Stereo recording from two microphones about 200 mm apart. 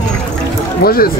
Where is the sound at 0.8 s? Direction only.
50° left (ahead or behind).